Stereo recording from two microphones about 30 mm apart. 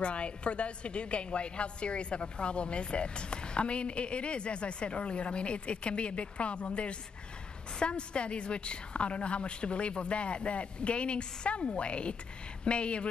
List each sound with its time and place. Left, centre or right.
0.0 s a woman's voice: left